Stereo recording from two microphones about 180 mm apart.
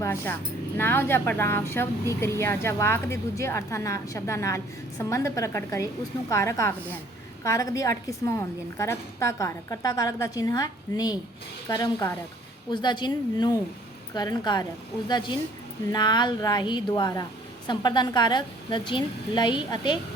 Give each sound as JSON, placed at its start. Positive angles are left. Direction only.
{"t": 0.0, "sound": "a woman's voice", "side_deg": 15}